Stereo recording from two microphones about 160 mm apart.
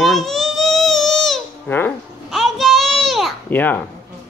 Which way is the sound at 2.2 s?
Centre (ahead or behind).